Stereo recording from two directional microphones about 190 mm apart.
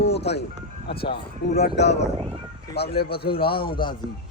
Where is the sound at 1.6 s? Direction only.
65° left (ahead or behind).